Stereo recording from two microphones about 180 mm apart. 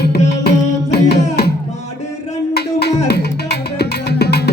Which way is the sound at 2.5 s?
65° left (ahead or behind).